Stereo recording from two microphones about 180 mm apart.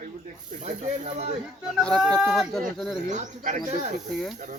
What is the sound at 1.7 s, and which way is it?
Speech, centre (ahead or behind).